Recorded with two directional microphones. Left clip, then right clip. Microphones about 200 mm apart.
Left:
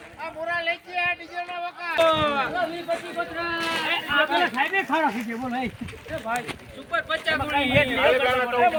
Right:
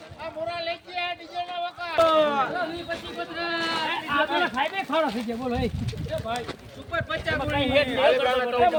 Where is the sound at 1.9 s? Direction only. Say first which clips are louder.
Right 1 dB; 20° left (ahead or behind).